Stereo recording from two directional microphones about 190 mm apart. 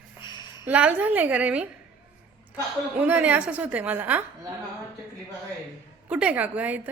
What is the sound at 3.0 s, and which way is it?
A woman's voice, 10° right (ahead or behind).